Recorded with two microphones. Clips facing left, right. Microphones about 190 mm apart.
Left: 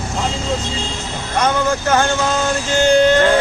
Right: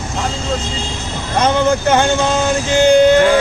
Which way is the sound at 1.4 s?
20° right (ahead or behind).